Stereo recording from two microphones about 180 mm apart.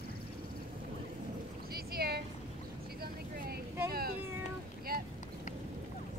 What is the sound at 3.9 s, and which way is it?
Cat, 60° right (ahead or behind).